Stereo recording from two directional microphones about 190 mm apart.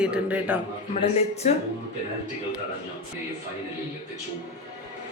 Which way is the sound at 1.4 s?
35° left (ahead or behind).